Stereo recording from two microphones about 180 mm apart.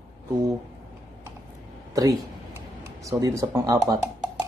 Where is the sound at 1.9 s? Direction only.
20° right (ahead or behind).